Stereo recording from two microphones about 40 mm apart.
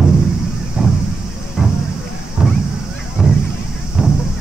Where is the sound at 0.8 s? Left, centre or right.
Right.